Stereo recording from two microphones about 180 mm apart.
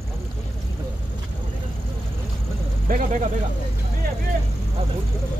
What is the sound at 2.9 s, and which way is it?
Speech, 45° right (ahead or behind).